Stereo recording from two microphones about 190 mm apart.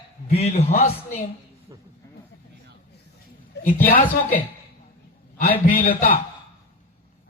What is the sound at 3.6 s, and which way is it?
Speech, 50° left (ahead or behind).